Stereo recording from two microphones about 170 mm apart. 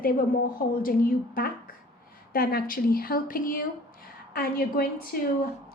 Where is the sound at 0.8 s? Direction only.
55° left (ahead or behind).